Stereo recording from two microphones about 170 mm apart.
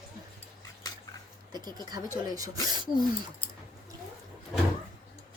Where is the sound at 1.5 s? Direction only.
25° right (ahead or behind).